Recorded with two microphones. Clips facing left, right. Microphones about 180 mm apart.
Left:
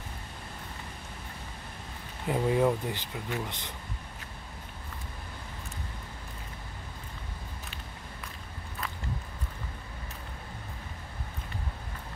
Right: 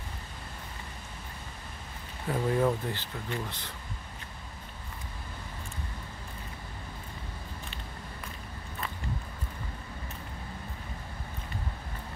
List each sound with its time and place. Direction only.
2.2 s speech: 15° left (ahead or behind)